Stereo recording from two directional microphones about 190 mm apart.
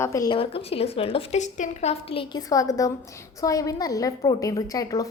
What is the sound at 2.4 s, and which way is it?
A woman's voice, 20° left (ahead or behind).